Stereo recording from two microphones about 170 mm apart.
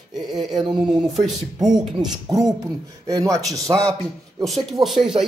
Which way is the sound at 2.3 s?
25° right (ahead or behind).